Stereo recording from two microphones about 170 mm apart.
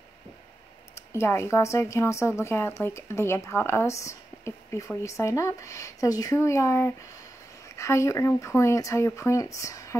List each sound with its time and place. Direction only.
0.9 s speech: 15° left (ahead or behind)